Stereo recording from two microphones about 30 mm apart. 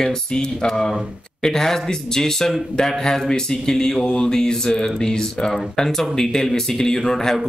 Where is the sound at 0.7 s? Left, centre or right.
Centre.